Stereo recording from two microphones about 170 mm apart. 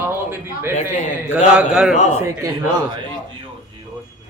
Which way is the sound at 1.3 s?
5° right (ahead or behind).